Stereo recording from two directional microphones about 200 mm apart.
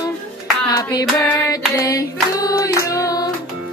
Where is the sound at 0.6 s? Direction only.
15° left (ahead or behind).